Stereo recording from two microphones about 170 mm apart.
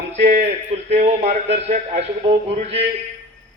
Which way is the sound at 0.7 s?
40° right (ahead or behind).